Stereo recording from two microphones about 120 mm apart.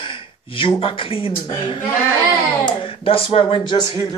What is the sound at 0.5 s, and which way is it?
Speech, 50° left (ahead or behind).